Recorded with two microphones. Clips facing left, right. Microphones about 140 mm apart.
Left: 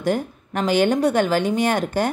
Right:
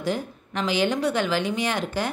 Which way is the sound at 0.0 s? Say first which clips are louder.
Left 5 dB; 50° left (ahead or behind).